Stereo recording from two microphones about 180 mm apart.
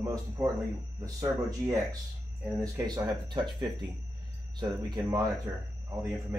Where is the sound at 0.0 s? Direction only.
20° right (ahead or behind).